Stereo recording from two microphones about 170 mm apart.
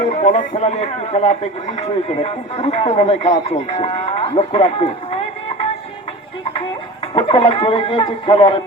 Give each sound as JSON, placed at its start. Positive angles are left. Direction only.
{"t": 0.1, "sound": "a man's voice", "side_deg": 40}
{"t": 7.1, "sound": "a man's voice", "side_deg": 30}